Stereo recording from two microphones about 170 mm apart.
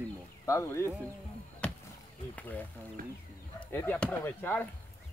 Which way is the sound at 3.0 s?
55° right (ahead or behind).